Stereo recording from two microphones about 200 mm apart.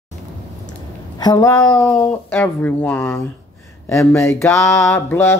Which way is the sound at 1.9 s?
10° left (ahead or behind).